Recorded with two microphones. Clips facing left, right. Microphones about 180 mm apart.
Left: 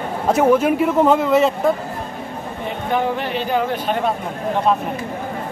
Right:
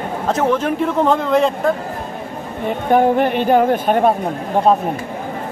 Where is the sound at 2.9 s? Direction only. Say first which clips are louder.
Right 7 dB; 50° right (ahead or behind).